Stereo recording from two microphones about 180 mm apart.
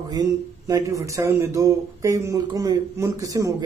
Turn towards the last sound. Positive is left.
turn(degrees=-20)  # may be behind; listen again after turning